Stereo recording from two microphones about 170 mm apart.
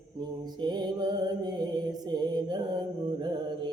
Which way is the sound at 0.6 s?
25° right (ahead or behind).